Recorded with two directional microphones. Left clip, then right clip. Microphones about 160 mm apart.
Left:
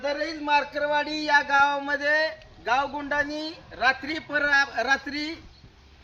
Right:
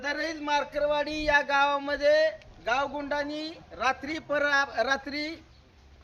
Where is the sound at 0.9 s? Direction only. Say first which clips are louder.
Left 5 dB; 35° right (ahead or behind).